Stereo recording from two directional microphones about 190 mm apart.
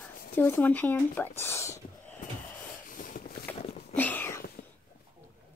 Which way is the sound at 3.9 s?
10° left (ahead or behind).